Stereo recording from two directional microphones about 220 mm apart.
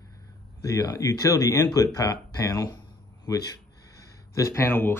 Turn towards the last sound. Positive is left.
turn(degrees=10)  # may be behind; listen again after turning